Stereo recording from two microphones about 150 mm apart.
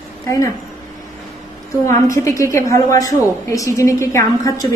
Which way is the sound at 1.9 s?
20° left (ahead or behind).